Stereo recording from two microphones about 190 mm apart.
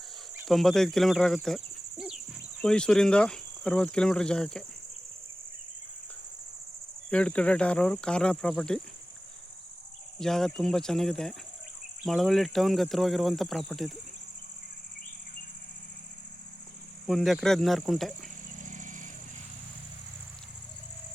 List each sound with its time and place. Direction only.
0.4 s speech: centre (ahead or behind)
7.1 s speech: 5° left (ahead or behind)
10.2 s speech: centre (ahead or behind)
17.1 s speech: centre (ahead or behind)
18.6 s vehicle: 40° right (ahead or behind)